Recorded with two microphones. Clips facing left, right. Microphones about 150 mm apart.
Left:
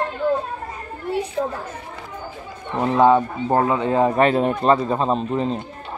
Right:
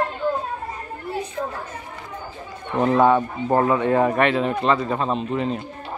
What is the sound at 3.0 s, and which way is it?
Speech, 15° left (ahead or behind).